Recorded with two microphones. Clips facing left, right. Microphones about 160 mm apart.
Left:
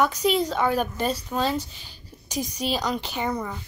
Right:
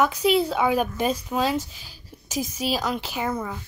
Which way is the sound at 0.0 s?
5° right (ahead or behind).